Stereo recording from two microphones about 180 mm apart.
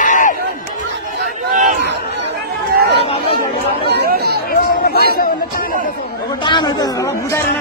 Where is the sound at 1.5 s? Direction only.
45° right (ahead or behind).